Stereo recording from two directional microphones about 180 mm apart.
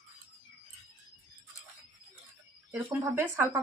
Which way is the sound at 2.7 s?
10° right (ahead or behind).